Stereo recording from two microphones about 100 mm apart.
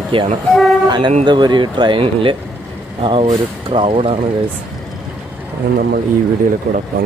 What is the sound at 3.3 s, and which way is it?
Speech, 70° right (ahead or behind).